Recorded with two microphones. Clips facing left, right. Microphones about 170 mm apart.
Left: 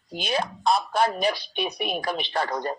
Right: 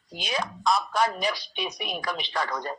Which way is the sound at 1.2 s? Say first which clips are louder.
Left 4 dB; 60° left (ahead or behind).